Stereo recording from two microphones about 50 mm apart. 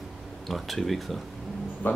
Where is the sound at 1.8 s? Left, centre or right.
Left.